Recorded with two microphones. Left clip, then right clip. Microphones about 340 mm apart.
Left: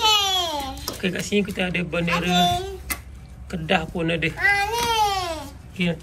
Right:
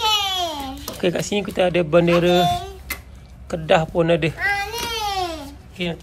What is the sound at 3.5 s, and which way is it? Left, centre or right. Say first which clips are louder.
Speech: right 6 dB; centre.